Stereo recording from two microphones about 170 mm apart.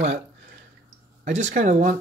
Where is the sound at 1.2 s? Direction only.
45° right (ahead or behind).